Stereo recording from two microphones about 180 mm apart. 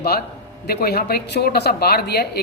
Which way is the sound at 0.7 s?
60° left (ahead or behind).